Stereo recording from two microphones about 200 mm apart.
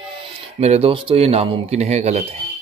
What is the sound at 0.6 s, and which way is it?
Speech, 30° right (ahead or behind).